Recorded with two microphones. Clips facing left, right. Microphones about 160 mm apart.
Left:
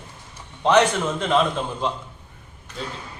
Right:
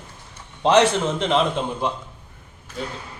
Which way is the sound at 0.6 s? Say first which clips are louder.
Right 1 dB; 30° right (ahead or behind).